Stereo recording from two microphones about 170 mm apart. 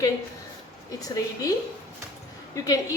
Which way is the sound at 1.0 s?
20° left (ahead or behind).